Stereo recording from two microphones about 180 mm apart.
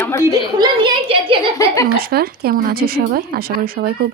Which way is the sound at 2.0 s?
60° right (ahead or behind).